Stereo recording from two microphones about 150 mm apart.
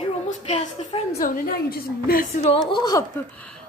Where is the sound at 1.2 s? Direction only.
70° left (ahead or behind).